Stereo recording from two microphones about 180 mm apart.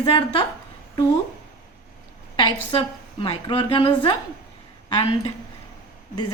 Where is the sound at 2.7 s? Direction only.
30° left (ahead or behind).